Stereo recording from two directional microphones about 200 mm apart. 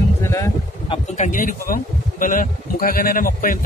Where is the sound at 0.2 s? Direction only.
15° left (ahead or behind).